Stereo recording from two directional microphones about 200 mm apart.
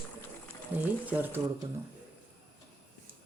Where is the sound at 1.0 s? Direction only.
10° right (ahead or behind).